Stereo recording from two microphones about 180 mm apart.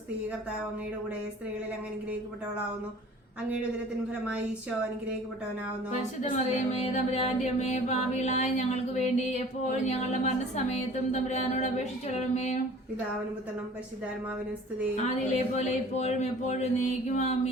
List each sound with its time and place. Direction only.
5.9 s speech: 40° left (ahead or behind)
14.9 s speech: 40° left (ahead or behind)